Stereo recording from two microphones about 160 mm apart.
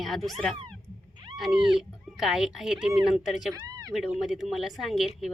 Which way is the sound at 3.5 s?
25° right (ahead or behind).